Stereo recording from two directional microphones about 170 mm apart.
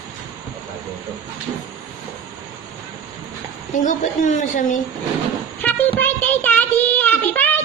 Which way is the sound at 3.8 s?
50° left (ahead or behind).